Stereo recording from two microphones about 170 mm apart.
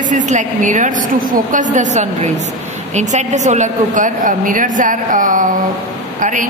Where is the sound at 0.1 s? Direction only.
45° right (ahead or behind).